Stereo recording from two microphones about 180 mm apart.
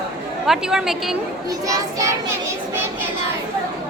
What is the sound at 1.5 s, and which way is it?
Speech, 20° right (ahead or behind).